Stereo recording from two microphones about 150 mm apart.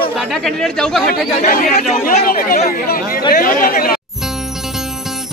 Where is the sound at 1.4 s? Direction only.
60° left (ahead or behind).